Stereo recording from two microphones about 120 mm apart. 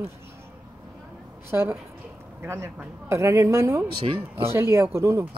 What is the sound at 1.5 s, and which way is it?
Speech, 20° right (ahead or behind).